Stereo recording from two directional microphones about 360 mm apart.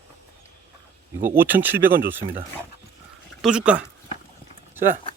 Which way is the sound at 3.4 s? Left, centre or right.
Centre.